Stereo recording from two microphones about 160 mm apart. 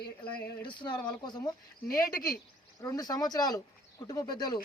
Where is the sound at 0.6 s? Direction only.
30° left (ahead or behind).